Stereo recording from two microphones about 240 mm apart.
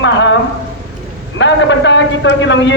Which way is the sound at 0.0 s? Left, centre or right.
Left.